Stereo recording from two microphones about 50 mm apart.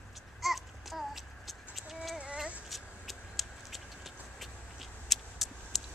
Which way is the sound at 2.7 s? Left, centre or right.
Centre.